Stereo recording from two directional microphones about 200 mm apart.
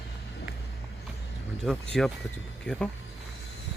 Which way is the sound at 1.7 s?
5° left (ahead or behind).